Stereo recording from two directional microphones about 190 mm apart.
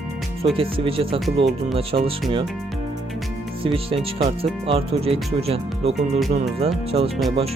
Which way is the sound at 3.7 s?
30° right (ahead or behind).